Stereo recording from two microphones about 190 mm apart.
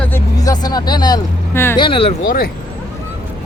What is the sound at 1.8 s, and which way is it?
Speech, 30° left (ahead or behind).